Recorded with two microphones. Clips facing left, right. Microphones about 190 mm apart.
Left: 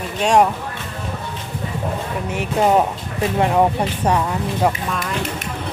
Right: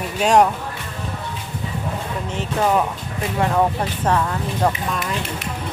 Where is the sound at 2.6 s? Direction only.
25° left (ahead or behind).